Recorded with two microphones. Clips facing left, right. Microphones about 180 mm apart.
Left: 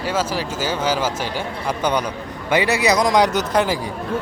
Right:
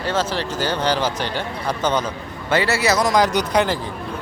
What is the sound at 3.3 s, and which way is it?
Speech, 5° left (ahead or behind).